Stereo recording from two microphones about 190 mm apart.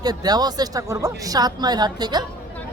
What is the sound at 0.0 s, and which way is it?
Speech, 20° right (ahead or behind).